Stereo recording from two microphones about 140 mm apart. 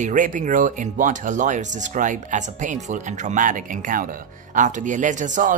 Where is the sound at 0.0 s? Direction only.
70° right (ahead or behind).